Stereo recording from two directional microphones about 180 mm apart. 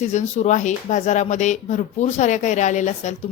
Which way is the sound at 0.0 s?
40° left (ahead or behind).